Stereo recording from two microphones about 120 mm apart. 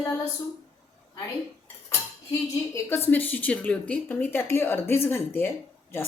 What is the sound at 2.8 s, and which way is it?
Speech, 20° left (ahead or behind).